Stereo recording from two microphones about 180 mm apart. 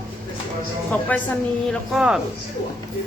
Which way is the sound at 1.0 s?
10° left (ahead or behind).